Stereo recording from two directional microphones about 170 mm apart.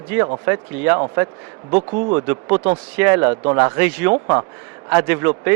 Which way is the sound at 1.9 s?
35° right (ahead or behind).